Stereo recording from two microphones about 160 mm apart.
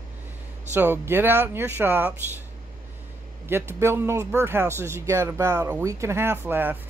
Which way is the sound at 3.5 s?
15° right (ahead or behind).